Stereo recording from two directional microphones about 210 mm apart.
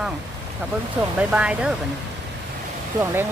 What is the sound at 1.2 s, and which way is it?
Speech, 5° right (ahead or behind).